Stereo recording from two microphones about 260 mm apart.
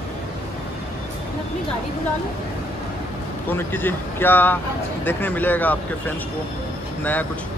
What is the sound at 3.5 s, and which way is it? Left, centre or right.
Speech, centre.